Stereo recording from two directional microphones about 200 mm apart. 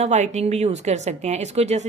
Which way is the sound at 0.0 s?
35° right (ahead or behind).